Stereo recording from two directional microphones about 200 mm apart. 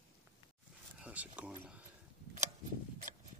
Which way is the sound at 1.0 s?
5° right (ahead or behind).